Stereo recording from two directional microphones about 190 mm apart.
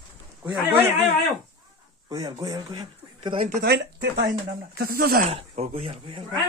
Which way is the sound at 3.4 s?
55° right (ahead or behind).